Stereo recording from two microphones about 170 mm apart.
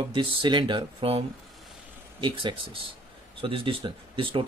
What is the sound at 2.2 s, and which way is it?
Speech, 30° right (ahead or behind).